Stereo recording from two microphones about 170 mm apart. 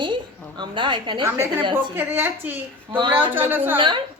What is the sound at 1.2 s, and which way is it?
A woman's voice, 15° right (ahead or behind).